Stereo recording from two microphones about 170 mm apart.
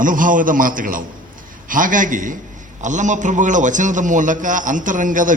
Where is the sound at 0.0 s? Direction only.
50° right (ahead or behind).